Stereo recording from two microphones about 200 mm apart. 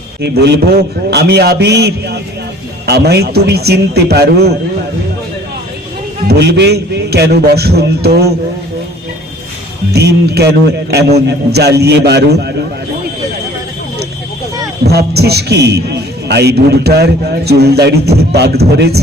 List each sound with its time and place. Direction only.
0.2 s a man's voice: 55° right (ahead or behind)
6.2 s a man's voice: 55° right (ahead or behind)
9.9 s a man's voice: 55° right (ahead or behind)
14.8 s a man's voice: 55° right (ahead or behind)